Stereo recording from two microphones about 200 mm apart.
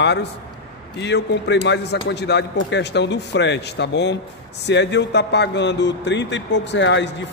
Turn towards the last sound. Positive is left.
turn(degrees=65)  # may be behind; listen again after turning